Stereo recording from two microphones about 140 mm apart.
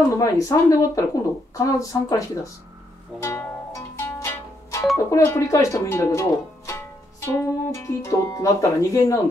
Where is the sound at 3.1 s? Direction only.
5° right (ahead or behind).